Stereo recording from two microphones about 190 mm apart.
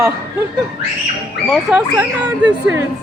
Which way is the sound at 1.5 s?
5° right (ahead or behind).